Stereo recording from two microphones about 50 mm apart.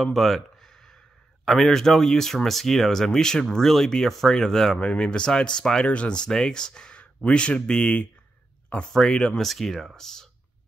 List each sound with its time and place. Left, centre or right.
0.0 s a sound: centre
1.4 s speech: centre; by 8.1 s left
8.8 s speech: centre